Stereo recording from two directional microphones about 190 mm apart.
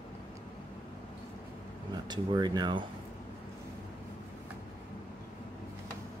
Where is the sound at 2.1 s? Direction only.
20° right (ahead or behind).